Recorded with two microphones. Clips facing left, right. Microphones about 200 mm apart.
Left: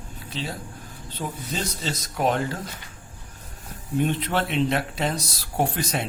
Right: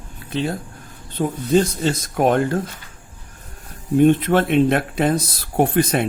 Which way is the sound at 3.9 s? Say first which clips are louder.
Right 10 dB; 50° right (ahead or behind).